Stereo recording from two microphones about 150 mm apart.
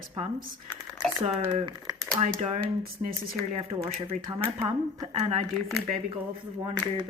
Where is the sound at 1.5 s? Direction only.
35° right (ahead or behind).